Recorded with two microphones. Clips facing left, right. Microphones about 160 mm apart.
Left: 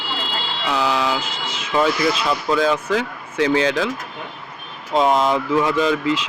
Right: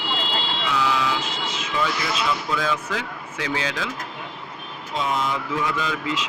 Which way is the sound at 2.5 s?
35° left (ahead or behind).